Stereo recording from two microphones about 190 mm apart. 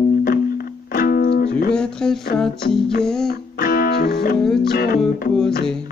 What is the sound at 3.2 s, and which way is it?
Music, 50° left (ahead or behind).